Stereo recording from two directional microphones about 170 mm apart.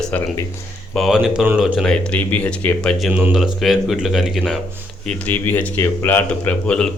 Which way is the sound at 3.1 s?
10° right (ahead or behind).